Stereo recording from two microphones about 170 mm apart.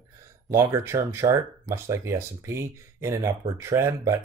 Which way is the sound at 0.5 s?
15° right (ahead or behind).